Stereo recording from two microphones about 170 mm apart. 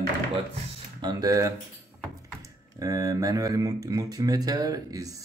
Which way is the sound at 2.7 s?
20° right (ahead or behind).